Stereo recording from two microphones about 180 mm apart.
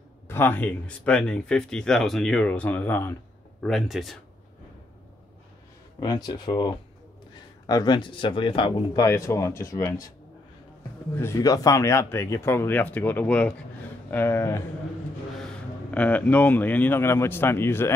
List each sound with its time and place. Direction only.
0.3 s speech: 10° left (ahead or behind)
3.6 s speech: centre (ahead or behind)
5.9 s speech: 20° left (ahead or behind)
11.1 s speech: 15° left (ahead or behind)
15.9 s speech: 10° left (ahead or behind)